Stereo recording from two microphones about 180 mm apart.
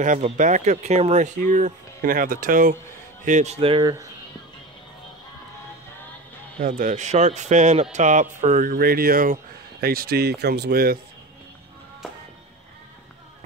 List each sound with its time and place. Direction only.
0.0 s speech: 45° right (ahead or behind)
3.3 s speech: 40° right (ahead or behind); by 4.1 s 20° right (ahead or behind)
6.6 s speech: 45° right (ahead or behind)